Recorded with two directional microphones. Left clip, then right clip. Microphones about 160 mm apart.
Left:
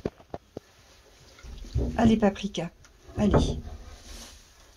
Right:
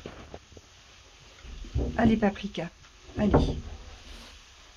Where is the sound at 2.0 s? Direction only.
15° left (ahead or behind).